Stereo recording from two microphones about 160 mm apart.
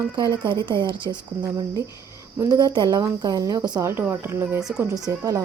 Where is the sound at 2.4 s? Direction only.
25° right (ahead or behind).